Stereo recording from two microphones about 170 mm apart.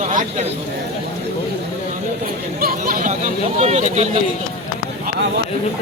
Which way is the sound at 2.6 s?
60° right (ahead or behind).